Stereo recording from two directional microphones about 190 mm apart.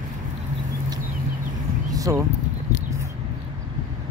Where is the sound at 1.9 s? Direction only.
20° right (ahead or behind).